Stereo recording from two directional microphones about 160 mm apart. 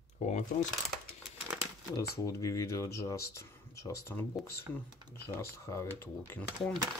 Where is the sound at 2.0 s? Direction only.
20° left (ahead or behind).